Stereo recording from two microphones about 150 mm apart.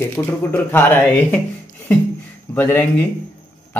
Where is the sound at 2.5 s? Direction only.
15° left (ahead or behind).